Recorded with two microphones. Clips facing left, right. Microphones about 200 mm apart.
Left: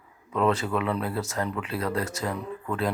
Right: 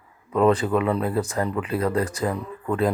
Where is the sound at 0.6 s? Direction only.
25° right (ahead or behind).